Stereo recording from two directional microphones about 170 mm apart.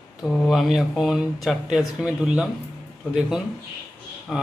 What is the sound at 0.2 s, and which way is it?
A man's voice, centre (ahead or behind).